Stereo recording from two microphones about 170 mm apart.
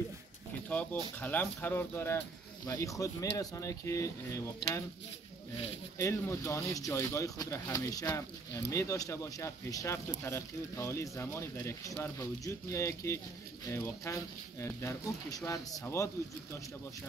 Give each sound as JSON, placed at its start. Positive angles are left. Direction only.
{"t": 1.2, "sound": "speech", "side_deg": 10}
{"t": 5.9, "sound": "speech", "side_deg": 15}